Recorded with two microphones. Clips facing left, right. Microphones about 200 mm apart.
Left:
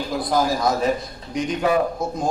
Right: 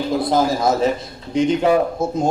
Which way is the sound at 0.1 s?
25° right (ahead or behind).